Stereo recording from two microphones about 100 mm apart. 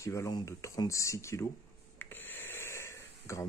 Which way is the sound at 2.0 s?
20° left (ahead or behind).